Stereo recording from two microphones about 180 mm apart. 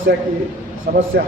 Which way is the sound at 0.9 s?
55° right (ahead or behind).